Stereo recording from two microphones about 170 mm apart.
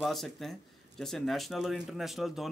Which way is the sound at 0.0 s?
Centre (ahead or behind).